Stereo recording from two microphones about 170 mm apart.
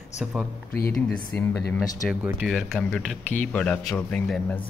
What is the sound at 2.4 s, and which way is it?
Speech, centre (ahead or behind).